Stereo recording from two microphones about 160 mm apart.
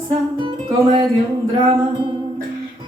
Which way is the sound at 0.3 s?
30° right (ahead or behind).